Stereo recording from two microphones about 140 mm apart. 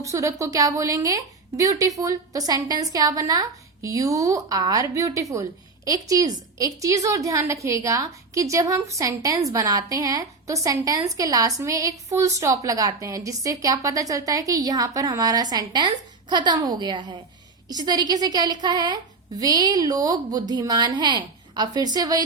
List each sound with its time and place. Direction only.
0.0 s a woman's voice: 25° right (ahead or behind)